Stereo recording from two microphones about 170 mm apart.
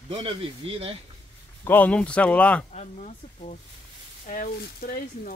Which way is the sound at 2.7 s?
45° left (ahead or behind).